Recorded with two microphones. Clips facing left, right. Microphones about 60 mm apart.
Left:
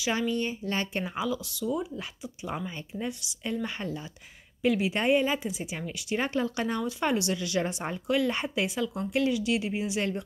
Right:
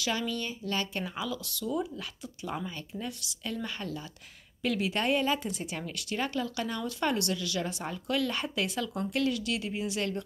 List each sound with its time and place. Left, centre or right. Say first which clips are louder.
0.1 s speech: left 6 dB; left
6.1 s speech: left 4 dB; left
6.8 s speech: even; centre